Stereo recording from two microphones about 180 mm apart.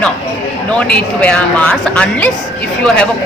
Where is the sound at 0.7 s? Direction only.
5° left (ahead or behind).